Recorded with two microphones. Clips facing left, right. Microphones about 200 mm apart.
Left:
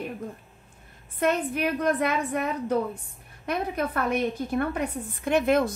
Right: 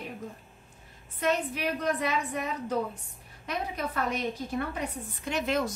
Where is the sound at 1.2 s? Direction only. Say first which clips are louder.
Left 4 dB; 55° left (ahead or behind).